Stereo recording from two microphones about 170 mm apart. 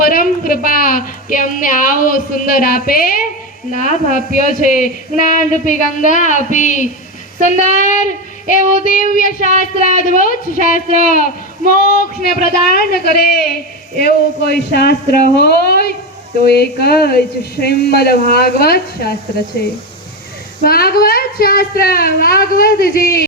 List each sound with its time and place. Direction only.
0.0 s a woman's voice: 55° left (ahead or behind)
3.7 s a woman's voice: 50° left (ahead or behind)